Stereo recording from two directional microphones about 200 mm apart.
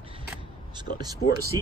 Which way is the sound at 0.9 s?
55° left (ahead or behind).